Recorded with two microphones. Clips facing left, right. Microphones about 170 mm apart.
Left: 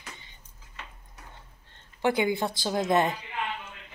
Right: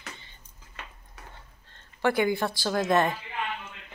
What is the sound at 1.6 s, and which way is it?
A woman's voice, 20° left (ahead or behind).